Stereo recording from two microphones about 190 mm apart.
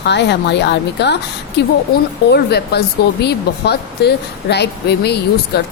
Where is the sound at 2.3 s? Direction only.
60° left (ahead or behind).